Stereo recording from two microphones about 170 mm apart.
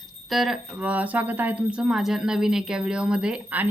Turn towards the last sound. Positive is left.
turn(degrees=-5)  # may be behind; listen again after turning